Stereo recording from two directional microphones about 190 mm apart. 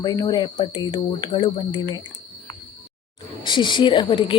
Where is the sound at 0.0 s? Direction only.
20° left (ahead or behind).